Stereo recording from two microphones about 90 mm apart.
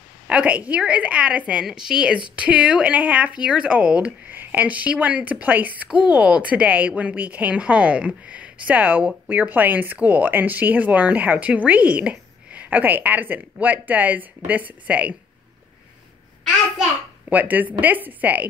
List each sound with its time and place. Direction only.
0.3 s speech: 15° right (ahead or behind)
17.3 s a woman's voice: 20° right (ahead or behind)